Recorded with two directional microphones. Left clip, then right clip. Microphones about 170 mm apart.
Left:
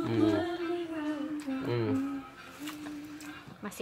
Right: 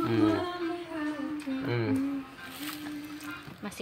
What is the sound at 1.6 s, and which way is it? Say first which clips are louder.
Humming: even; 20° left (ahead or behind).